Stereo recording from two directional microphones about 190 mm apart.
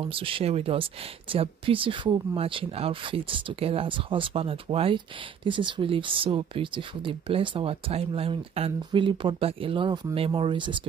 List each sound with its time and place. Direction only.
0.0 s speech: 30° right (ahead or behind)